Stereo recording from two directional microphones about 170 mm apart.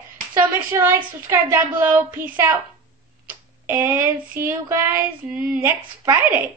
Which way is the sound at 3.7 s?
15° right (ahead or behind).